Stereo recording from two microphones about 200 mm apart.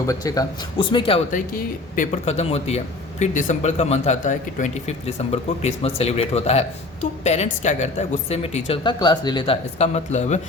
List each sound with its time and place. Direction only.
0.1 s speech: 15° left (ahead or behind); by 10.4 s 35° left (ahead or behind)